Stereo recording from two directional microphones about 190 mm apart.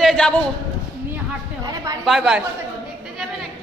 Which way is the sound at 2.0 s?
Centre (ahead or behind).